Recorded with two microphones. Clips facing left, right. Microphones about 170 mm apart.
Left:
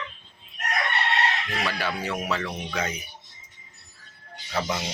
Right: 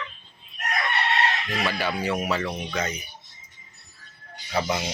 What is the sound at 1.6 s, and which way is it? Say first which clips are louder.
Speech: right 4 dB; centre (ahead or behind).